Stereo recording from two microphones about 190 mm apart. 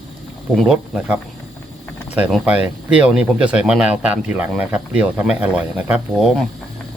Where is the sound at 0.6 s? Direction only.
5° right (ahead or behind).